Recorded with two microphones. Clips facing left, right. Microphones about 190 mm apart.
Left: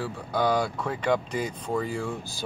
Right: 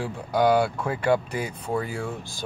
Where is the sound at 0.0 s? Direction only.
10° right (ahead or behind).